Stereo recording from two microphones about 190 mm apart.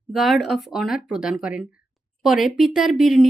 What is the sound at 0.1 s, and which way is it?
A woman's voice, centre (ahead or behind).